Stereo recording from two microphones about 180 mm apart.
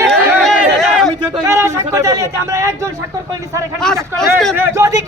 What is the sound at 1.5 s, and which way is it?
Speech, 15° right (ahead or behind).